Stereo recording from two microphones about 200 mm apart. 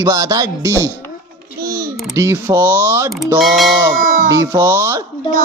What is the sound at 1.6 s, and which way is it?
Babbling, 50° right (ahead or behind).